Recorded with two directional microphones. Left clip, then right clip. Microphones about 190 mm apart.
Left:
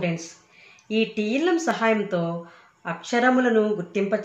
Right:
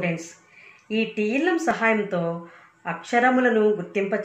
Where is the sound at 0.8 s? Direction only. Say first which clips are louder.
Even; 65° left (ahead or behind).